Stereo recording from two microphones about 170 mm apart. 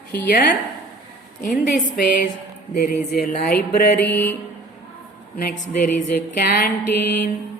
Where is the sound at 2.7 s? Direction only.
70° left (ahead or behind).